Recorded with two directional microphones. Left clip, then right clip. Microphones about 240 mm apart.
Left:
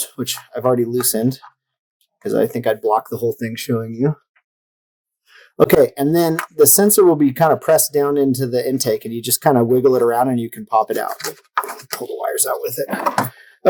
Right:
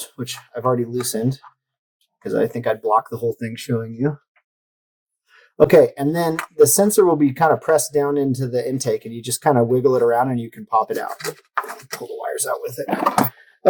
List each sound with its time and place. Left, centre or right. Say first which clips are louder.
0.0 s speech: left 5 dB; left
5.3 s speech: right 1 dB; left
13.3 s computer keyboard: left 4 dB; left